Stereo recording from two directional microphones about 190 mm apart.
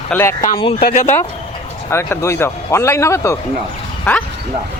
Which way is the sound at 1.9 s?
15° left (ahead or behind).